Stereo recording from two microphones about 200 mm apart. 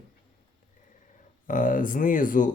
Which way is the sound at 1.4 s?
40° left (ahead or behind).